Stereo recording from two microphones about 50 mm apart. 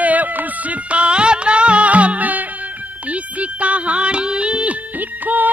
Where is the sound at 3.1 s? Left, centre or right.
Right.